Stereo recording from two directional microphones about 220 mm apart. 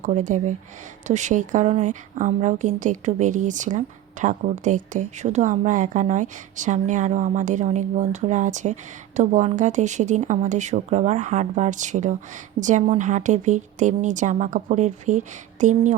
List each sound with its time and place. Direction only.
0.0 s a woman's voice: 35° right (ahead or behind)